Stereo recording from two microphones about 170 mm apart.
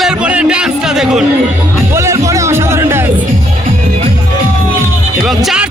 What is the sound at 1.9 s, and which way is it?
Music, 15° right (ahead or behind).